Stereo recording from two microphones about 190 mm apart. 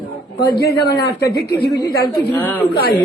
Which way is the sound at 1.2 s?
20° left (ahead or behind).